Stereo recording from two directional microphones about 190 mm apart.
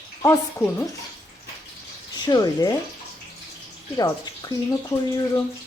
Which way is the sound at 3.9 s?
20° left (ahead or behind).